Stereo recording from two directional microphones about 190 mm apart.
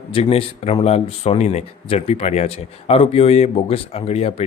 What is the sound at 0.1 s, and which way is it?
Speech, 30° left (ahead or behind).